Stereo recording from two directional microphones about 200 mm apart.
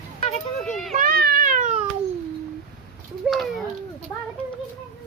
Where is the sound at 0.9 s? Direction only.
45° right (ahead or behind).